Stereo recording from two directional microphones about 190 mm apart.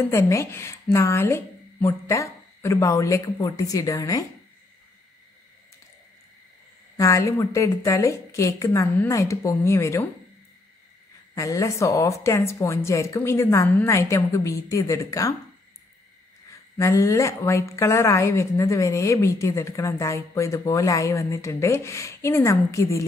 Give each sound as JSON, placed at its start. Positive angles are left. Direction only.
{"t": 0.0, "sound": "a woman's voice", "side_deg": 15}
{"t": 7.0, "sound": "a woman's voice", "side_deg": 15}
{"t": 11.3, "sound": "a woman's voice", "side_deg": 15}
{"t": 16.7, "sound": "a woman's voice", "side_deg": 15}